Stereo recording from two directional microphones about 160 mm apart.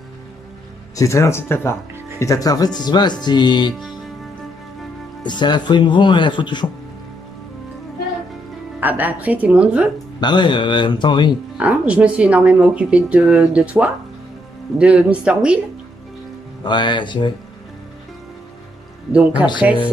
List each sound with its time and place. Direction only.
0.9 s speech: 20° left (ahead or behind)
5.2 s speech: 30° left (ahead or behind)
8.7 s speech: 10° right (ahead or behind)
10.2 s speech: 30° left (ahead or behind)
11.5 s speech: 10° right (ahead or behind)
16.6 s speech: 30° left (ahead or behind)
19.6 s speech: 10° right (ahead or behind)